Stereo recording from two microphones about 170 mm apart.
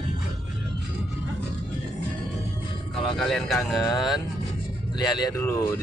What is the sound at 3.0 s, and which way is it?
Speech, centre (ahead or behind).